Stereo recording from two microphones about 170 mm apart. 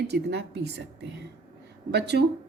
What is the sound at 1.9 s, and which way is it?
Speech, 80° right.